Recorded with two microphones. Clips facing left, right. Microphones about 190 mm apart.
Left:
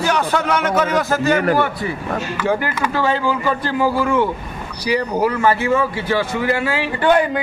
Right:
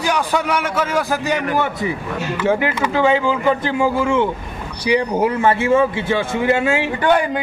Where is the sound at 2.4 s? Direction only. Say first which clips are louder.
Right 3 dB; 20° right (ahead or behind).